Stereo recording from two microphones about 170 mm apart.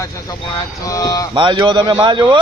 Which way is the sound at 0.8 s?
20° left (ahead or behind).